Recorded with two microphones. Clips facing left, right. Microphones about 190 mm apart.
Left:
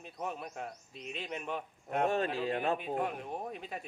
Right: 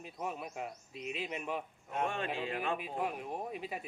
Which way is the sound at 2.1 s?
40° left (ahead or behind).